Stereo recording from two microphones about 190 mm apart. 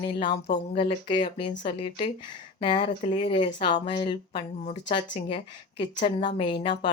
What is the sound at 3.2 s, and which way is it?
Speech, 40° left (ahead or behind).